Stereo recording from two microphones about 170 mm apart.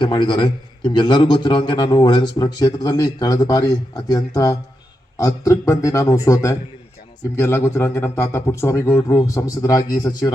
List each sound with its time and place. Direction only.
0.0 s speech: 25° left (ahead or behind)